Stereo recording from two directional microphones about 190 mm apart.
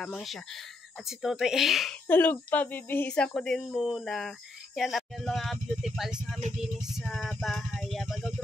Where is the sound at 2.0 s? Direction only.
10° left (ahead or behind).